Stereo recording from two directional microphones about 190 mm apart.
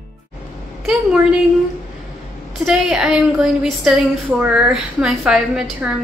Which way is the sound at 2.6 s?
5° right (ahead or behind).